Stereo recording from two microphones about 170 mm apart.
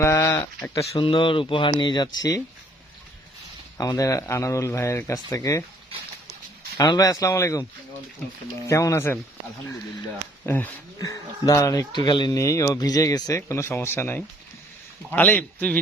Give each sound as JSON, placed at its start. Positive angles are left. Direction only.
{"t": 0.0, "sound": "speech", "side_deg": 15}
{"t": 1.0, "sound": "speech", "side_deg": 30}
{"t": 3.8, "sound": "speech", "side_deg": 20}
{"t": 6.7, "sound": "speech", "side_deg": 25}
{"t": 8.6, "sound": "speech", "side_deg": 15}
{"t": 10.4, "sound": "speech", "side_deg": 10}